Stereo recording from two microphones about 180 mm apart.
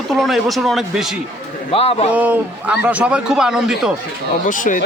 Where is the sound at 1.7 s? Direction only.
35° left (ahead or behind).